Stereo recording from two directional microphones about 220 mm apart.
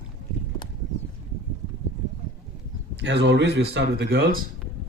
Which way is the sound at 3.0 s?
50° right (ahead or behind).